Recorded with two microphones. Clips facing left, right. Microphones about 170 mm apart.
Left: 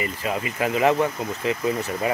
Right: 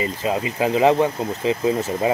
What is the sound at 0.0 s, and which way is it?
Speech, 25° right (ahead or behind).